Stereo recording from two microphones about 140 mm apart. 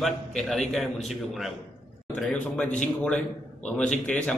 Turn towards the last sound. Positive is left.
turn(degrees=5)  # may be behind; listen again after turning